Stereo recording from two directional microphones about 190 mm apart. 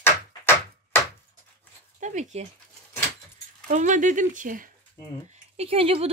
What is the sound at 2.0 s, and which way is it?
Speech, 40° right (ahead or behind).